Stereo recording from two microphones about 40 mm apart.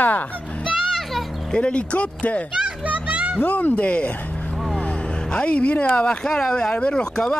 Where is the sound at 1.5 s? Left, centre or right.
Left.